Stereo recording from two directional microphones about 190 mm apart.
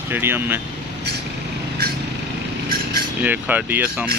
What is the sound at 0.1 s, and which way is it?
Speech, 10° right (ahead or behind).